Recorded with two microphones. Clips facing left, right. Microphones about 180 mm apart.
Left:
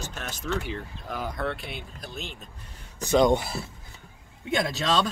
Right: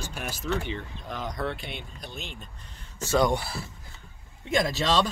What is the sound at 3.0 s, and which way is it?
Speech, 20° left (ahead or behind).